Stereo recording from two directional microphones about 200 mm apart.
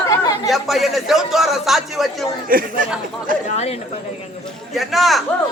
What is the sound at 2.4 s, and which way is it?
Speech, 45° right (ahead or behind).